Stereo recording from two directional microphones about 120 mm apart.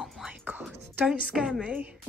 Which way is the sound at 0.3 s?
15° right (ahead or behind).